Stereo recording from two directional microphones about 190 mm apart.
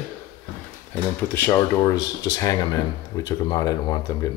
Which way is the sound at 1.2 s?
10° left (ahead or behind).